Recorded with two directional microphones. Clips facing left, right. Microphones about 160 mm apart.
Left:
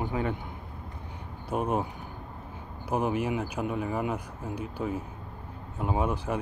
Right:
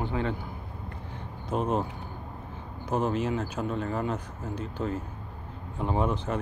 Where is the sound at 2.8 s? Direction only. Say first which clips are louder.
Even; 10° left (ahead or behind).